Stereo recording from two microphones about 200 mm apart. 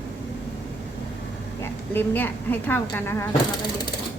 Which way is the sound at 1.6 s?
10° left (ahead or behind).